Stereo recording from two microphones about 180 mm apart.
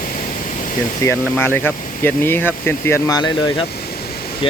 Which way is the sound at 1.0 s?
10° left (ahead or behind).